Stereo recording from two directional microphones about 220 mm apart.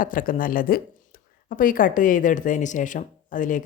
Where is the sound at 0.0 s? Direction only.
40° left (ahead or behind).